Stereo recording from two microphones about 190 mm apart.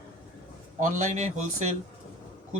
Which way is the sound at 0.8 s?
40° right (ahead or behind).